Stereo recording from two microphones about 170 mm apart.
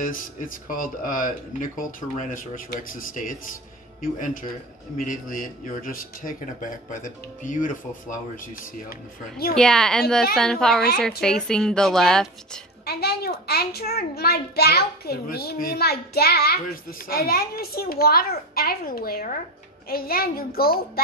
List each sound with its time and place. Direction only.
0.0 s speech: 55° left (ahead or behind)
9.6 s a woman's voice: 5° left (ahead or behind)
12.8 s a child's voice: 70° left (ahead or behind)